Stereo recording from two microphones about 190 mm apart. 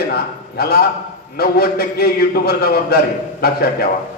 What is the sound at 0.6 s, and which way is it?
A man's voice, 55° left (ahead or behind).